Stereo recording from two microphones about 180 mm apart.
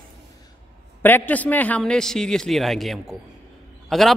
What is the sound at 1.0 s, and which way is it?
A man's voice, 10° left (ahead or behind).